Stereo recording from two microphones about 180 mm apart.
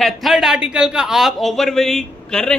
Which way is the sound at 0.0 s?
Centre (ahead or behind).